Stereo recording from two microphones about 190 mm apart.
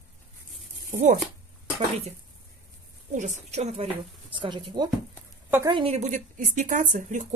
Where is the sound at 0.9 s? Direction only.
40° right (ahead or behind).